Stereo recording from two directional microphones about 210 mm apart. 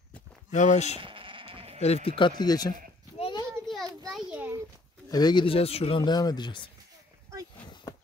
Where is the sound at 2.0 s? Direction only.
25° left (ahead or behind).